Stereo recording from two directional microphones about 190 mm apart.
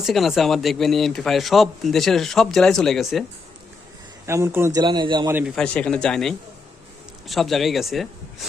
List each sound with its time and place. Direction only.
0.0 s speech: centre (ahead or behind)
4.3 s a man's voice: 15° right (ahead or behind)
5.3 s speech: 10° right (ahead or behind)
5.5 s speech: 5° left (ahead or behind)